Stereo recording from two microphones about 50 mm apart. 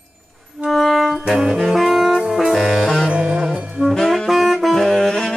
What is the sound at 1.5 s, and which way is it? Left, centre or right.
Saxophone, centre.